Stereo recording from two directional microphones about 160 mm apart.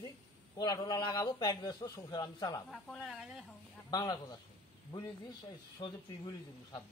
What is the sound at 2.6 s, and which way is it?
Speech, 5° left (ahead or behind).